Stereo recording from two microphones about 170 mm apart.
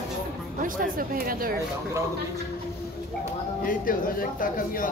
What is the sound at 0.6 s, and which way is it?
Speech, 55° right (ahead or behind).